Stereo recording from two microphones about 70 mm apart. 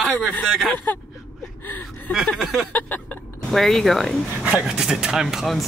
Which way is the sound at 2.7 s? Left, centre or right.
Left.